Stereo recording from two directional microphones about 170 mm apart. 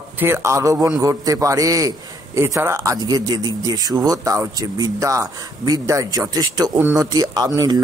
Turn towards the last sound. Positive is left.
turn(degrees=-20)  # may be behind; listen again after turning